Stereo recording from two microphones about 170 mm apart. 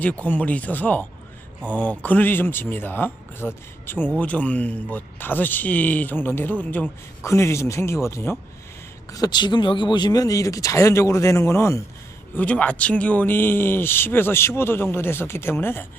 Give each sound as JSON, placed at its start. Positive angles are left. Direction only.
{"t": 0.2, "sound": "speech", "side_deg": 10}